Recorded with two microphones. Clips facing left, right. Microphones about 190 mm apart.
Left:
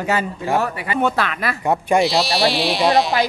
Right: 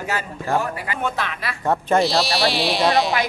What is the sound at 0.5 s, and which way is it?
Speech, 65° left (ahead or behind).